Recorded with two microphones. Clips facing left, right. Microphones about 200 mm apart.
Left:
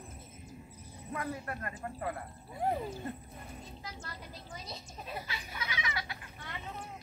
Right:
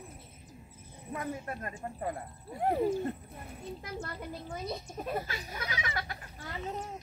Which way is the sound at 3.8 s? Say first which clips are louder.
Right 7 dB; 55° right (ahead or behind).